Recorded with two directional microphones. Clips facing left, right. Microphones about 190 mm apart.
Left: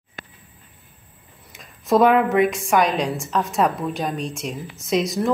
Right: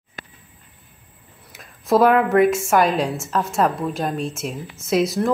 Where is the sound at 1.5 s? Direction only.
Centre (ahead or behind).